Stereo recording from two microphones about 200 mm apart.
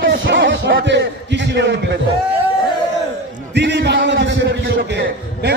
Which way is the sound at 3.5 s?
60° right (ahead or behind).